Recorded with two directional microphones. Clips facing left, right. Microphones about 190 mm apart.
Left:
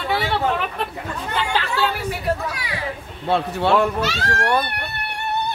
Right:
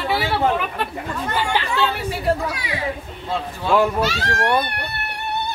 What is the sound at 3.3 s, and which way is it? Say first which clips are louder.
Speech: left 5 dB; 65° left (ahead or behind).